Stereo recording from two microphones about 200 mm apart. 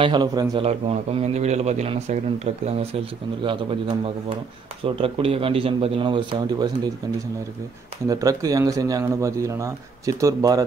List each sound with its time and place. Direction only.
0.0 s a man's voice: 20° right (ahead or behind)
0.7 s a man's voice: 30° right (ahead or behind)
8.1 s speech: 15° right (ahead or behind)